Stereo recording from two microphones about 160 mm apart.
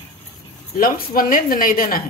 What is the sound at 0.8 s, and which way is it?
A woman's voice, 60° left (ahead or behind).